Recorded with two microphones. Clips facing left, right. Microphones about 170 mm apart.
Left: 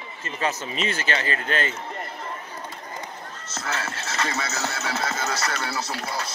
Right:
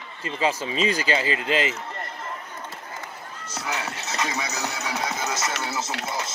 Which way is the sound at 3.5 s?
15° right (ahead or behind).